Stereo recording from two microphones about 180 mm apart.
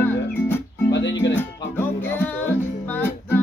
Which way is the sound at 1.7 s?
10° left (ahead or behind).